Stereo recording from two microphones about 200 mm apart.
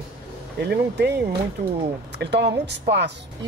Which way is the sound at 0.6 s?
55° right (ahead or behind).